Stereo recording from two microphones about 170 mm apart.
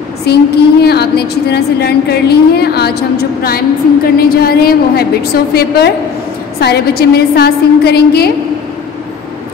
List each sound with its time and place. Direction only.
0.3 s a woman's voice: 70° left (ahead or behind)